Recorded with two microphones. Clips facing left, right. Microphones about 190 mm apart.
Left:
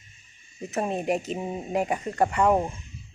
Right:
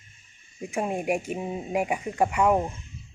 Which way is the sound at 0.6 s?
10° right (ahead or behind).